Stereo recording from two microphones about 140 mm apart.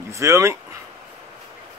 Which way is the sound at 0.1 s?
20° right (ahead or behind).